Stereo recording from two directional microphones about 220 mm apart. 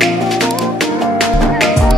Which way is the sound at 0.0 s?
Centre (ahead or behind).